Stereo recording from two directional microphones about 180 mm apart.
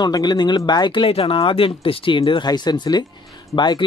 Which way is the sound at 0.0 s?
25° left (ahead or behind).